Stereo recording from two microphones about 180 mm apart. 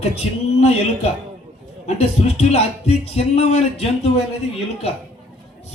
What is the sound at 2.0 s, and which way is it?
Speech, 35° left (ahead or behind).